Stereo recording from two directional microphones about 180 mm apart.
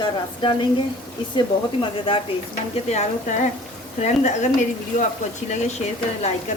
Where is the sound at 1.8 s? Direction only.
30° left (ahead or behind).